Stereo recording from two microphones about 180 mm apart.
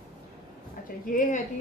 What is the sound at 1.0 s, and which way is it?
Speech, 50° left (ahead or behind).